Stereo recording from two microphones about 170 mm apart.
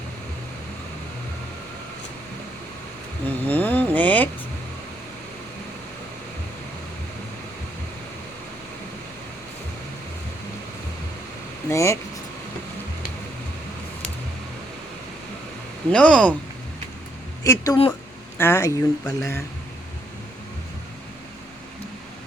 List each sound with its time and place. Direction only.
3.2 s vehicle: 10° left (ahead or behind)
11.7 s speech: 15° left (ahead or behind)
15.9 s speech: 5° left (ahead or behind)
17.4 s speech: 20° left (ahead or behind)